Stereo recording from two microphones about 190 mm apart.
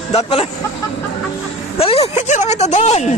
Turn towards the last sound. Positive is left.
turn(degrees=35)  # may be behind; listen again after turning